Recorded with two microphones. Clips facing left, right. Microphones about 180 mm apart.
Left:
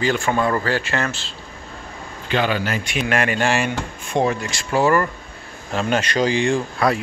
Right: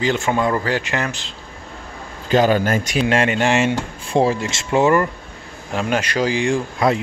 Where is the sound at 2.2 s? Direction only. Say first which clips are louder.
Right 6 dB; 40° right (ahead or behind).